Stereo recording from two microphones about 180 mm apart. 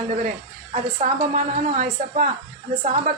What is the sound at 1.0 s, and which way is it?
A woman's voice, 40° right (ahead or behind).